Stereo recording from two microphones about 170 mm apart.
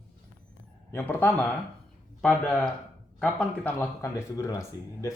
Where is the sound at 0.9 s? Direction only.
10° left (ahead or behind).